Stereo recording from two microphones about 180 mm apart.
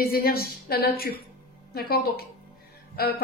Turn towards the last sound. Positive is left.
turn(degrees=60)  # may be behind; listen again after turning